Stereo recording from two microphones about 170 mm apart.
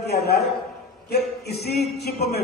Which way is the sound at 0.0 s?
75° left (ahead or behind).